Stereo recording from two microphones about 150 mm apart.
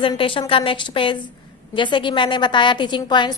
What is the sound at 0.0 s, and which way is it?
A woman's voice, 35° left (ahead or behind).